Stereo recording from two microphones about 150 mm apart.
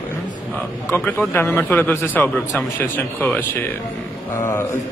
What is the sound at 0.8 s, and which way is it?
A man's voice, 15° left (ahead or behind).